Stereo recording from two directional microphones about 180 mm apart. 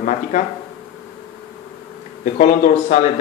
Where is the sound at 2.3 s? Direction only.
45° left (ahead or behind).